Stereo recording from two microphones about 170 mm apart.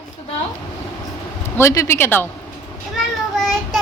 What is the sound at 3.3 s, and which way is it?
Child singing, 5° left (ahead or behind).